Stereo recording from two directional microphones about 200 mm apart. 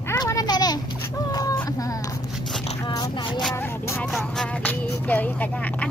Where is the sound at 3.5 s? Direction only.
10° left (ahead or behind).